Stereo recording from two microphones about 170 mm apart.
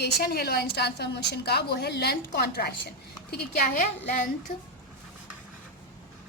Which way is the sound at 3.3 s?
50° left (ahead or behind).